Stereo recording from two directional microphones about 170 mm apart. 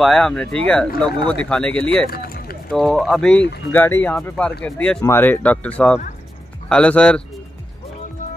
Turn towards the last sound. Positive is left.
turn(degrees=5)  # may be behind; listen again after turning